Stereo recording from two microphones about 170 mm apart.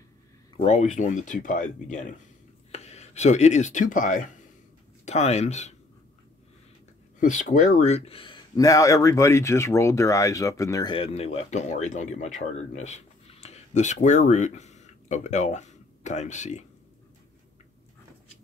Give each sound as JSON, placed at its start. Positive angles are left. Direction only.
{"t": 0.6, "sound": "speech", "side_deg": 40}
{"t": 7.2, "sound": "speech", "side_deg": 45}